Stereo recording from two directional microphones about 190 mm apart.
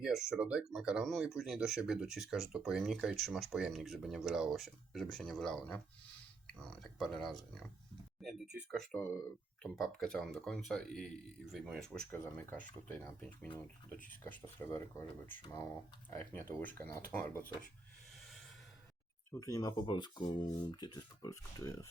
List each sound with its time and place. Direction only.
0.0 s speech: centre (ahead or behind)
12.1 s speech: 10° left (ahead or behind)
19.3 s speech: 15° left (ahead or behind)